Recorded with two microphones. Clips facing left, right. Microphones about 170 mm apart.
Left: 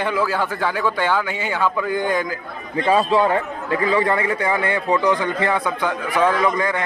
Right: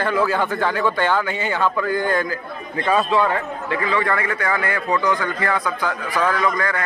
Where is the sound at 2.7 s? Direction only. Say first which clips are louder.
Left 2 dB; 30° left (ahead or behind).